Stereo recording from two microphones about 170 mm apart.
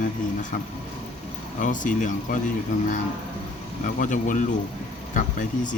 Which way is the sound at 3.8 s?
50° left (ahead or behind).